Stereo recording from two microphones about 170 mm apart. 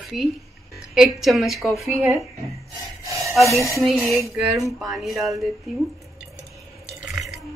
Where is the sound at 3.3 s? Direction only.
Centre (ahead or behind).